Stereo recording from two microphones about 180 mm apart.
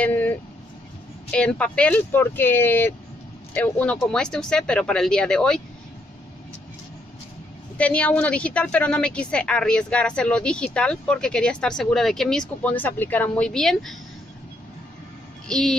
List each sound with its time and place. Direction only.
0.0 s vehicle: 10° left (ahead or behind)
1.3 s a woman's voice: 5° left (ahead or behind)
7.7 s a woman's voice: 5° left (ahead or behind)
15.4 s speech: 5° left (ahead or behind)